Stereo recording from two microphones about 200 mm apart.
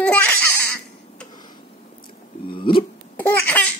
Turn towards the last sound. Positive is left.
turn(degrees=10)  # may be behind; listen again after turning